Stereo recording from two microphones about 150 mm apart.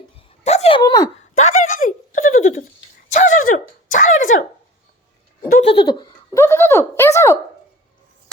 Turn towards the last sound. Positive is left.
turn(degrees=20)  # may be behind; listen again after turning